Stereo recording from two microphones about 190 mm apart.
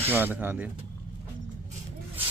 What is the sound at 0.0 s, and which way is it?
Speech, 10° right (ahead or behind).